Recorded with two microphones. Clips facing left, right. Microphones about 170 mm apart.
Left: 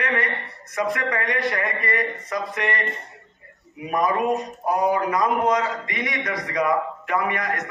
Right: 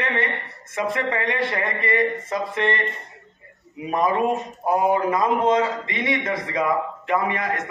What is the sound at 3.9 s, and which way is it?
A man's voice, 25° right (ahead or behind).